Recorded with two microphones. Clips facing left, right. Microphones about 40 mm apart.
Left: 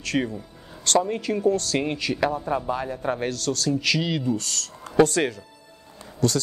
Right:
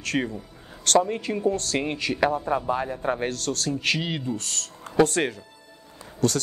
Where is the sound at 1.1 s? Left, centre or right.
Right.